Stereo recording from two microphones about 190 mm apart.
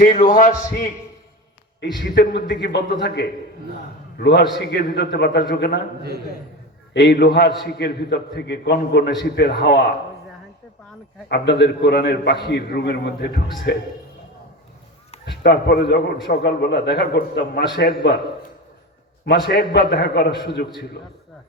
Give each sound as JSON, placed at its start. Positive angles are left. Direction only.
{"t": 0.0, "sound": "a man's voice", "side_deg": 40}
{"t": 2.2, "sound": "a man's voice", "side_deg": 60}
{"t": 6.0, "sound": "a man's voice", "side_deg": -55}
{"t": 6.9, "sound": "a man's voice", "side_deg": 65}
{"t": 11.3, "sound": "a man's voice", "side_deg": 60}
{"t": 15.3, "sound": "a man's voice", "side_deg": 60}
{"t": 19.2, "sound": "a man's voice", "side_deg": 60}